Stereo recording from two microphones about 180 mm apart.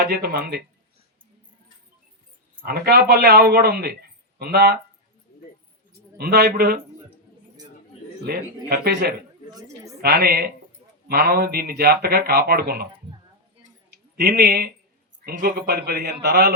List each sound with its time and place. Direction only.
0.0 s speech: 60° right (ahead or behind)
2.6 s speech: 60° right (ahead or behind)
6.1 s speech: 60° right (ahead or behind)
8.2 s speech: 60° right (ahead or behind)
13.9 s speech: 65° right (ahead or behind)